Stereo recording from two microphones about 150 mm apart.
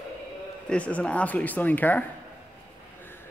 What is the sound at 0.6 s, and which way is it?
Speech, 10° left (ahead or behind).